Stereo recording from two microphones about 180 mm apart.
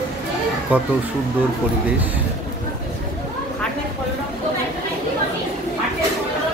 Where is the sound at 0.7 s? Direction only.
10° right (ahead or behind).